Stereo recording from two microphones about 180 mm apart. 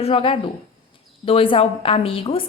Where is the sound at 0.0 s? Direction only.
30° left (ahead or behind).